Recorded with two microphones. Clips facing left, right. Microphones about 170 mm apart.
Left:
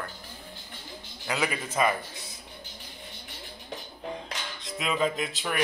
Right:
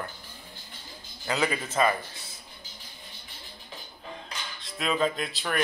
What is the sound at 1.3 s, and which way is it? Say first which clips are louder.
Speech: right 2 dB; 10° left (ahead or behind).